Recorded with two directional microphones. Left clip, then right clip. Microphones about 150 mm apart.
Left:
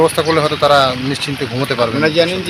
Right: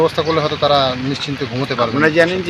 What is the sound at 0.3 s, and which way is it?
Speech, centre (ahead or behind).